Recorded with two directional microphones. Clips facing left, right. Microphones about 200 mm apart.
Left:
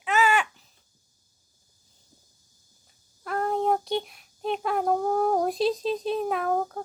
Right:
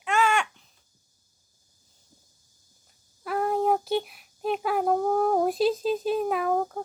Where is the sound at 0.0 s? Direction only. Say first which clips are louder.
Left 1 dB; 5° left (ahead or behind).